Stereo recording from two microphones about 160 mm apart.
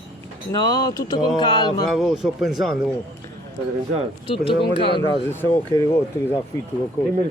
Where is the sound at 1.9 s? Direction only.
Centre (ahead or behind).